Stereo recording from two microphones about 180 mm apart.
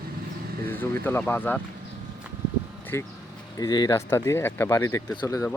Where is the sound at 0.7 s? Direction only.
10° left (ahead or behind).